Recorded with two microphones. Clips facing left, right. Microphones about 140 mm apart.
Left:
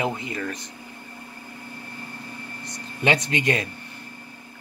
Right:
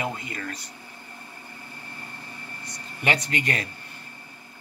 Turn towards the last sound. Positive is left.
turn(degrees=20)  # may be behind; listen again after turning